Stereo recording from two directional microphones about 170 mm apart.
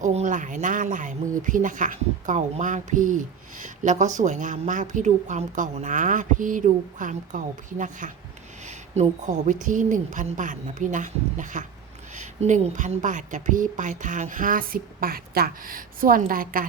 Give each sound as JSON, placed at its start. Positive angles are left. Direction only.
{"t": 0.0, "sound": "a woman's voice", "side_deg": -45}